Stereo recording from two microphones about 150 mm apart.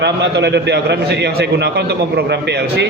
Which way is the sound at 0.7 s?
90° right.